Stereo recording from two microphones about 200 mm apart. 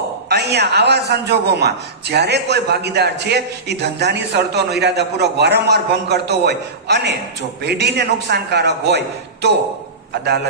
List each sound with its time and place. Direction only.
0.3 s a man's voice: 55° right (ahead or behind)